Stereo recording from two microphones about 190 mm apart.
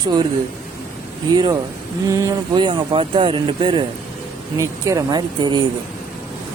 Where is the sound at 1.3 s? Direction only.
20° right (ahead or behind).